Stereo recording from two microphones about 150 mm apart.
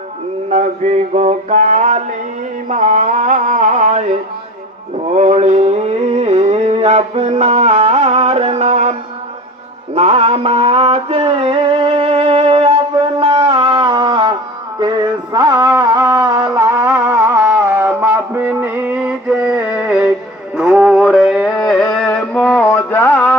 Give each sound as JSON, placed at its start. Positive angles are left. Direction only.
{"t": 0.5, "sound": "mantra", "side_deg": -50}
{"t": 2.6, "sound": "music", "side_deg": -55}
{"t": 5.0, "sound": "a sound", "side_deg": -50}
{"t": 9.9, "sound": "mantra", "side_deg": -45}
{"t": 14.8, "sound": "music", "side_deg": -30}
{"t": 20.6, "sound": "mantra", "side_deg": -10}
{"t": 21.0, "sound": "music", "side_deg": 0}
{"t": 21.4, "sound": "mantra", "side_deg": 10}